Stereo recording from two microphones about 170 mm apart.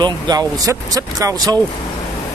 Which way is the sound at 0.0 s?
25° right (ahead or behind).